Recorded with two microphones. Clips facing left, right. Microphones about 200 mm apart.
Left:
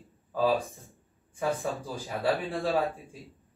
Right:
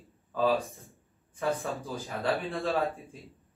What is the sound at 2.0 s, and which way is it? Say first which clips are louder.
Speech: left 3 dB; 15° left (ahead or behind).